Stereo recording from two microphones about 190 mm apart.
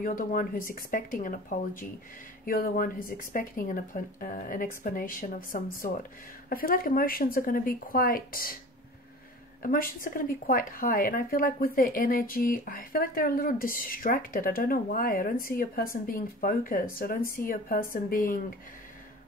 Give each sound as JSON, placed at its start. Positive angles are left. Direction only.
{"t": 0.0, "sound": "speech", "side_deg": 45}
{"t": 9.6, "sound": "speech", "side_deg": 50}